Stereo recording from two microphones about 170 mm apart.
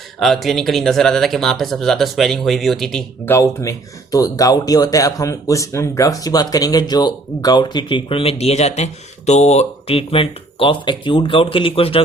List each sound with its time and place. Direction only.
0.2 s speech: centre (ahead or behind)
3.2 s speech: 15° left (ahead or behind); by 12.0 s 35° left (ahead or behind)